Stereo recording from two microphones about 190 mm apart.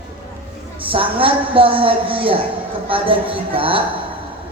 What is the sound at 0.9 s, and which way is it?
Speech, 30° right (ahead or behind).